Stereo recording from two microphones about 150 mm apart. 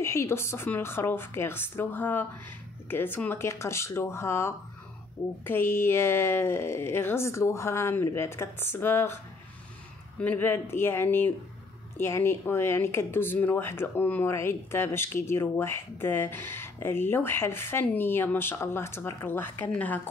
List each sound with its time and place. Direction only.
0.0 s speech: 20° left (ahead or behind)
10.2 s speech: 15° left (ahead or behind)